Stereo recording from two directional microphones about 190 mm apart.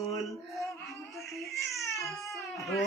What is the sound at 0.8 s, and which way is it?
Baby cry, centre (ahead or behind).